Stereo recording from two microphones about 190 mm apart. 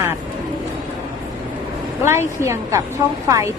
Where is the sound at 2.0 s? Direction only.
15° right (ahead or behind).